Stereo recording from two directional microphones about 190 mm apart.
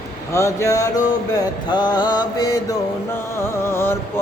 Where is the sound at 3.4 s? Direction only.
15° left (ahead or behind).